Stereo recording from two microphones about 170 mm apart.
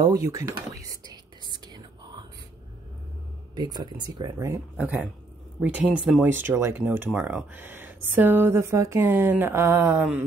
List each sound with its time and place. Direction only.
0.0 s whispering: 20° right (ahead or behind)
3.5 s speech: 25° right (ahead or behind)